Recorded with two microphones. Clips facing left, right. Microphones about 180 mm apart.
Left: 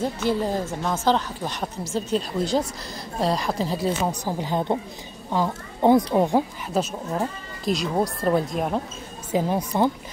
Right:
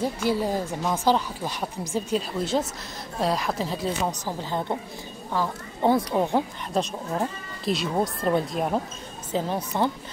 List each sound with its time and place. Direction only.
0.0 s a woman's voice: 10° right (ahead or behind)
4.2 s a woman's voice: 15° left (ahead or behind)
6.7 s speech: centre (ahead or behind)
9.3 s a woman's voice: 10° left (ahead or behind)